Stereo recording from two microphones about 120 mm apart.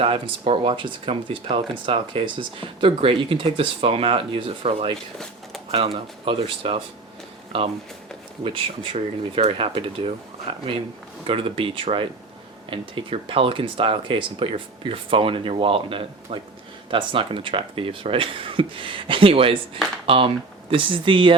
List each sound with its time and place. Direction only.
0.0 s speech: 50° right (ahead or behind)
8.4 s speech: 50° right (ahead or behind)